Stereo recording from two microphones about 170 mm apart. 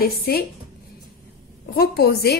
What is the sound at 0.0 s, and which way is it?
Speech, 60° left (ahead or behind).